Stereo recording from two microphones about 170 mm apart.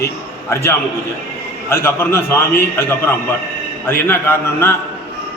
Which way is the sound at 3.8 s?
10° left (ahead or behind).